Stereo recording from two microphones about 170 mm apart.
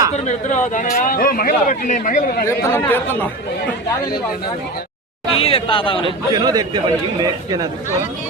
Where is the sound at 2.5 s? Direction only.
15° left (ahead or behind).